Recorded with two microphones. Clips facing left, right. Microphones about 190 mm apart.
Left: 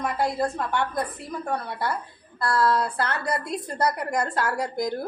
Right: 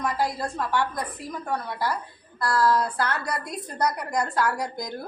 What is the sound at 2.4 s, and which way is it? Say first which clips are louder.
A woman's voice: even; 25° left (ahead or behind).